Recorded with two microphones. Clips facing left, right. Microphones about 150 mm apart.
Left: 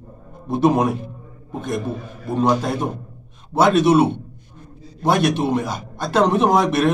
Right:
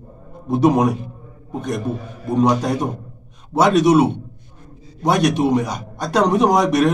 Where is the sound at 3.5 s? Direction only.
15° right (ahead or behind).